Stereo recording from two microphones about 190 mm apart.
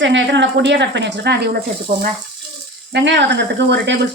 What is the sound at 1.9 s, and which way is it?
Speech, 50° right (ahead or behind).